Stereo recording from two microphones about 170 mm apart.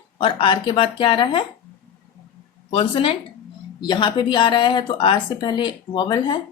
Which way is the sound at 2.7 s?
30° left (ahead or behind).